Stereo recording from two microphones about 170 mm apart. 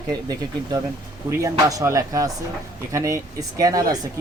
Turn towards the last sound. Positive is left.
turn(degrees=-20)  # may be behind; listen again after turning